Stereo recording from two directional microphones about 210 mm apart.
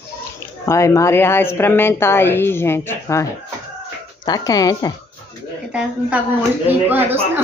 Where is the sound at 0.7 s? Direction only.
15° left (ahead or behind).